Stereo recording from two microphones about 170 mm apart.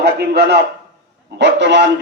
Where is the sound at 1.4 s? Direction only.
90° right.